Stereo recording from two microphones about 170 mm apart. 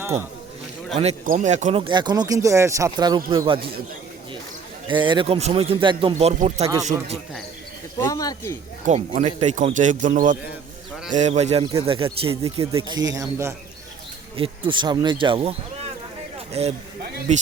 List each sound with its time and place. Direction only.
0.0 s speech: 15° right (ahead or behind)
1.2 s speech: 45° right (ahead or behind)
1.8 s speech: 25° right (ahead or behind)
4.9 s speech: 30° right (ahead or behind)
7.9 s speech: 20° left (ahead or behind)
8.9 s speech: 45° right (ahead or behind)
11.6 s speech: 30° right (ahead or behind)
13.1 s speech: 20° right (ahead or behind)
14.3 s speech: 30° right (ahead or behind)